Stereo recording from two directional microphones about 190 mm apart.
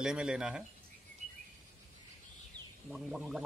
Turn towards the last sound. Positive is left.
turn(degrees=0)  # may be behind; listen again after turning